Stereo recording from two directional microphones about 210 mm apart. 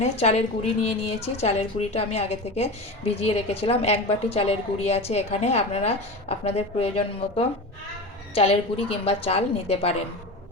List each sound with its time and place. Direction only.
0.0 s a woman's voice: 30° left (ahead or behind)